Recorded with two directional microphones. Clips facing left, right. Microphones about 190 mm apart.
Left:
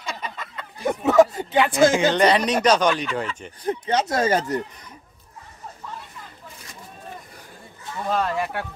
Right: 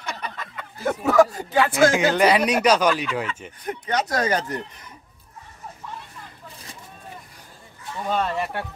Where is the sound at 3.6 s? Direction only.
25° left (ahead or behind).